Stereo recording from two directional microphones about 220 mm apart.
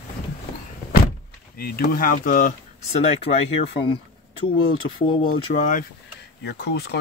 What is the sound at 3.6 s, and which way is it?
Speech, 25° left (ahead or behind).